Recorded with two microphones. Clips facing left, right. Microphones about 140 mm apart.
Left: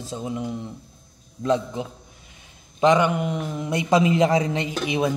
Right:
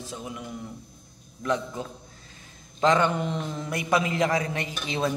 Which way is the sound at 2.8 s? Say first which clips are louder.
Left 4 dB; 15° left (ahead or behind).